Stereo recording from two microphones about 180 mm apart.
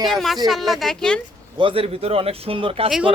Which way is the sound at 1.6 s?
30° right (ahead or behind).